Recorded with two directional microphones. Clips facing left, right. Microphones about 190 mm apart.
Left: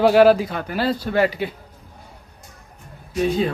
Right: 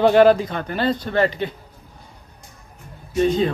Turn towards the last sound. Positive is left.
turn(degrees=5)  # may be behind; listen again after turning